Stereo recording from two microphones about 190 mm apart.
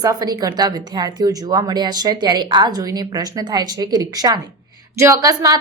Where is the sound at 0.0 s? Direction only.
20° right (ahead or behind).